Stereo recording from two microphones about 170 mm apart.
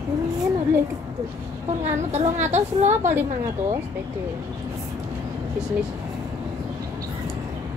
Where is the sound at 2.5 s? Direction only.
40° right (ahead or behind).